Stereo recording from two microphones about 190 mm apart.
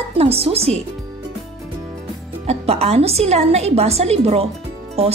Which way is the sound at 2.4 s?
35° right (ahead or behind).